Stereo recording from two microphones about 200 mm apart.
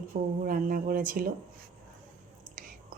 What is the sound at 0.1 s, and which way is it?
Speech, 45° right (ahead or behind).